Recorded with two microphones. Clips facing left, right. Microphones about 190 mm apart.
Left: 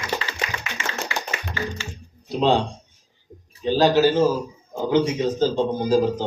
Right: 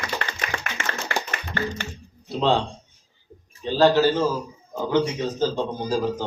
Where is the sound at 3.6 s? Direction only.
15° left (ahead or behind).